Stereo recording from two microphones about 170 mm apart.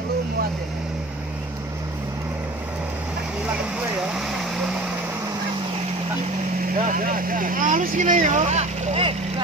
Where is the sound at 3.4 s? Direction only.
5° right (ahead or behind).